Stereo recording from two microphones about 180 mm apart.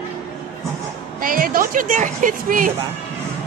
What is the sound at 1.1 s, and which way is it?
Speech, 50° right (ahead or behind).